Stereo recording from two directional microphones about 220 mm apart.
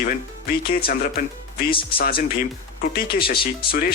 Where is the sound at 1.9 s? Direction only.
45° left (ahead or behind).